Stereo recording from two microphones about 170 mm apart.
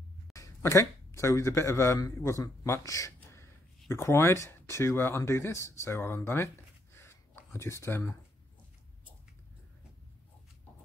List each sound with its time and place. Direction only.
0.3 s speech: 15° left (ahead or behind)